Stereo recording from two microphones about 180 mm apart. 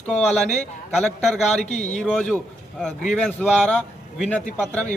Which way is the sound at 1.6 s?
40° left (ahead or behind).